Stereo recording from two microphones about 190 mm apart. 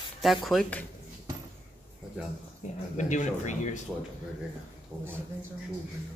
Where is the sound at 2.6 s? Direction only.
40° left (ahead or behind).